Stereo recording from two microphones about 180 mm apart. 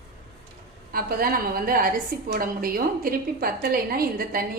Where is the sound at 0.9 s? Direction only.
55° right (ahead or behind).